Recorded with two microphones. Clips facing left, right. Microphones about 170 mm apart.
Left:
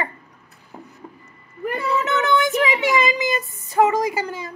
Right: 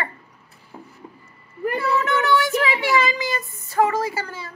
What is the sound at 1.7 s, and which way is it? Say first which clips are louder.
Speech: even; 20° left (ahead or behind).